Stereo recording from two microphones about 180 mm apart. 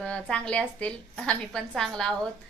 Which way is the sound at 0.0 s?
5° left (ahead or behind).